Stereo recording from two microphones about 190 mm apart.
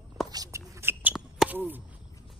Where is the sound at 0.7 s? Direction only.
10° right (ahead or behind).